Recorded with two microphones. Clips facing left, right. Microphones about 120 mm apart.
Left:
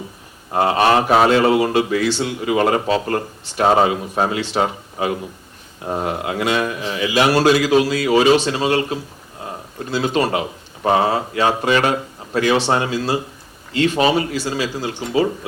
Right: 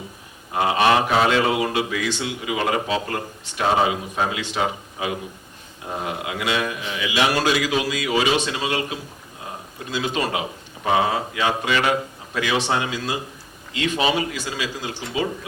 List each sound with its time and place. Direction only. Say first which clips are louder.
0.5 s speech: left 3 dB; 40° left (ahead or behind)